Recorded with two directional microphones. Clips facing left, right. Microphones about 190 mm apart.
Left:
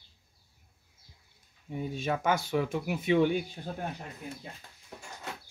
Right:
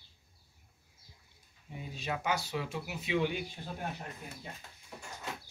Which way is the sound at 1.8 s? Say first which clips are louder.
Left 7 dB; 50° left (ahead or behind).